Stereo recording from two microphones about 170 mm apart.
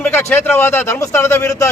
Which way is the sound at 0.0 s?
15° left (ahead or behind).